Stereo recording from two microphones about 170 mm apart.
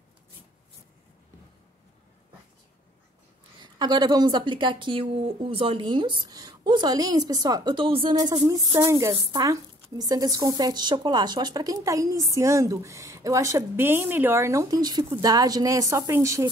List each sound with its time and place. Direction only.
3.5 s a woman's voice: 25° right (ahead or behind)